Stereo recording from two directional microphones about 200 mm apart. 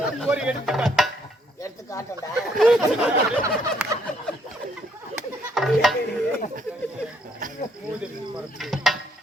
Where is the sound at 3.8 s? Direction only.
5° right (ahead or behind).